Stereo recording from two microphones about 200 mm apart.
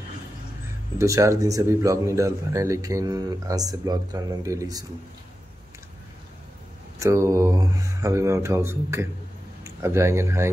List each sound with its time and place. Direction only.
0.9 s speech: 15° right (ahead or behind)
7.0 s speech: 15° right (ahead or behind)